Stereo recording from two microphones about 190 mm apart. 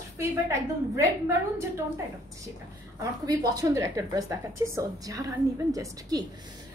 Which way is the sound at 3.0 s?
20° right (ahead or behind).